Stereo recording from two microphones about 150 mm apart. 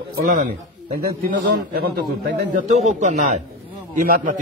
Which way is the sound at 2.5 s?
60° right (ahead or behind).